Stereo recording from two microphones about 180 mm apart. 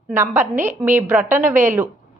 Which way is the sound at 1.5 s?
45° right (ahead or behind).